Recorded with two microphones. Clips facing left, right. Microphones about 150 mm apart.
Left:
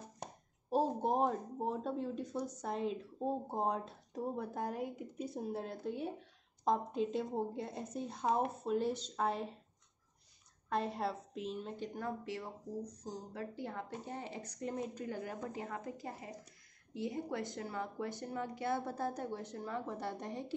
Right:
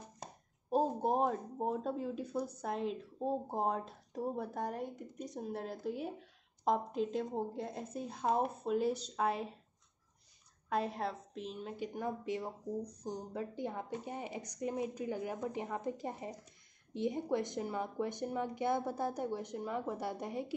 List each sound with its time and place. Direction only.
0.7 s a woman's voice: centre (ahead or behind)
10.7 s a woman's voice: centre (ahead or behind)